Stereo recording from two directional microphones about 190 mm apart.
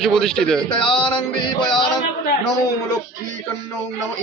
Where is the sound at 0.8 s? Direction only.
25° left (ahead or behind).